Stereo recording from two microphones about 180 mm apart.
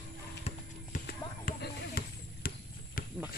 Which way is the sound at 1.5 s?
60° left (ahead or behind).